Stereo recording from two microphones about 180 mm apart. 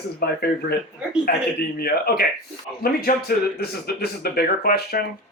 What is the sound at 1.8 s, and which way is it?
Speech, 55° left (ahead or behind).